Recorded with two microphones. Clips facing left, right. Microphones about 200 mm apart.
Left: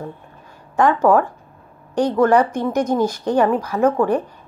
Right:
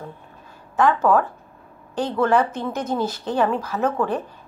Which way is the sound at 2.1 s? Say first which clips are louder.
Left 3 dB; 10° left (ahead or behind).